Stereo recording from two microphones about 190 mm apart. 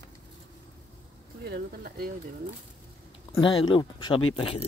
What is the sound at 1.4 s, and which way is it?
Speech, 55° right (ahead or behind).